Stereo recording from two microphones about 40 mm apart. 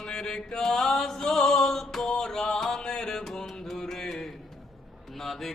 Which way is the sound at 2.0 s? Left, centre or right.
Centre.